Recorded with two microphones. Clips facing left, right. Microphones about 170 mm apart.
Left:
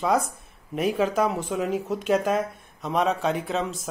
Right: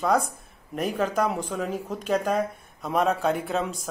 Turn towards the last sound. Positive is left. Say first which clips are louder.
# even
turn(degrees=0)  # may be behind; listen again after turning